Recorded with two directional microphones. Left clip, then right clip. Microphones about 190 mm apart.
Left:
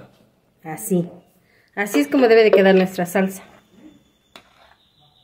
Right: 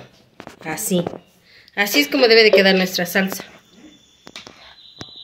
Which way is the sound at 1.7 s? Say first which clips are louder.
Right 2 dB; 55° left (ahead or behind).